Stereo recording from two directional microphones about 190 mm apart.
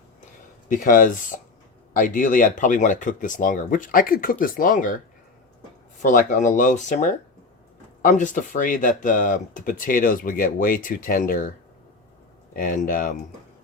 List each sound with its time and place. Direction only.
0.7 s speech: 45° left (ahead or behind)
6.0 s speech: 40° left (ahead or behind)
12.5 s speech: 45° left (ahead or behind)